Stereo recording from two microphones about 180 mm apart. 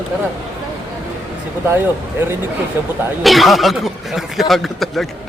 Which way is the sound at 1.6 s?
10° right (ahead or behind).